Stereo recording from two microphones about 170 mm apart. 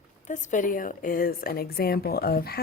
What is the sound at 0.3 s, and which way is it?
A woman's voice, 45° left (ahead or behind).